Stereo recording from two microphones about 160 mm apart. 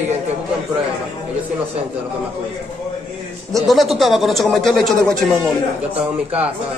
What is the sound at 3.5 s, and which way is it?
Speech, centre (ahead or behind).